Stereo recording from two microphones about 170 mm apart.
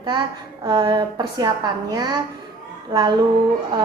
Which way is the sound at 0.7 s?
25° right (ahead or behind).